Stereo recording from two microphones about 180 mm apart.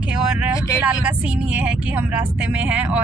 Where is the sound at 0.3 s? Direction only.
5° right (ahead or behind).